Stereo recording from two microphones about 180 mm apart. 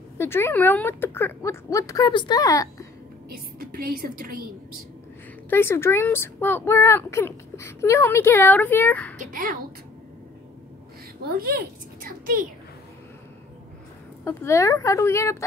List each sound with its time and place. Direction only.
0.2 s speech: 15° left (ahead or behind)
3.3 s a woman's voice: 55° right (ahead or behind)
5.5 s speech: 15° left (ahead or behind)
9.2 s a child's voice: 50° right (ahead or behind)
11.2 s a woman's voice: 60° right (ahead or behind)
14.2 s speech: 15° left (ahead or behind)